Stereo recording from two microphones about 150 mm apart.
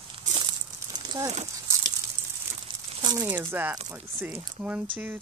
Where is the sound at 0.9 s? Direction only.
30° right (ahead or behind).